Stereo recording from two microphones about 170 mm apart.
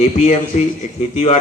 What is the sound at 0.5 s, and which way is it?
Speech, 45° left (ahead or behind).